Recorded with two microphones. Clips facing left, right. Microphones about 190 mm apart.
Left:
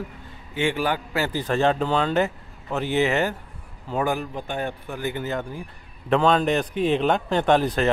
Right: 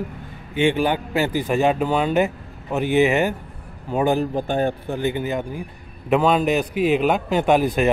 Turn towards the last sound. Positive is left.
turn(degrees=-10)  # may be behind; listen again after turning